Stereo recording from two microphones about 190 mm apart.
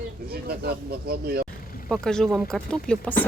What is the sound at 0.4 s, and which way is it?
Speech, 55° right (ahead or behind).